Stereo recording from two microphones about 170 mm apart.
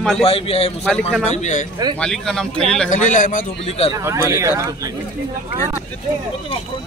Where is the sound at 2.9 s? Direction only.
50° left (ahead or behind).